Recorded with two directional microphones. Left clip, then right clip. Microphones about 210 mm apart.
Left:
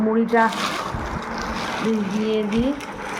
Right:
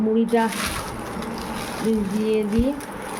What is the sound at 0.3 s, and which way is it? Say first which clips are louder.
Speech: left 3 dB; 25° right (ahead or behind).